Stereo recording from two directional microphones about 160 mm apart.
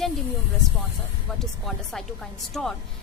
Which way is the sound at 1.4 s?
Centre (ahead or behind).